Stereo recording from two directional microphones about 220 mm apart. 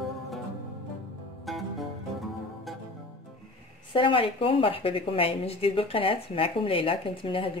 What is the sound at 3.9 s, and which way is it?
A woman's voice, 25° left (ahead or behind).